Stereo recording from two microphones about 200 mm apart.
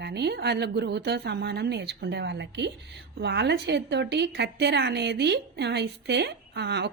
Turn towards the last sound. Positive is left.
turn(degrees=-55)  # may be behind; listen again after turning